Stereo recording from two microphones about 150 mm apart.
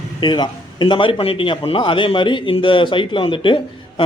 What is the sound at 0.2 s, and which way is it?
A man's voice, 30° left (ahead or behind).